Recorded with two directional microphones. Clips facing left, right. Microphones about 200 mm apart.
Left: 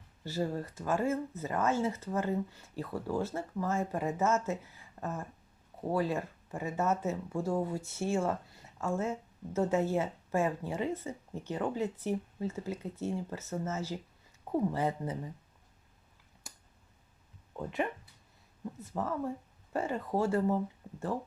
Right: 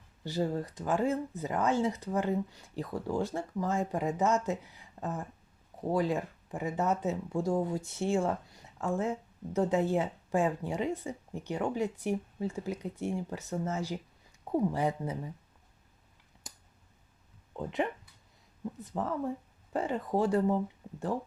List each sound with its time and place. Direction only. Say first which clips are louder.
0.3 s speech: right 2 dB; 15° right (ahead or behind)
16.4 s a sound: right 2 dB; 20° right (ahead or behind)
17.6 s speech: right 2 dB; 20° right (ahead or behind)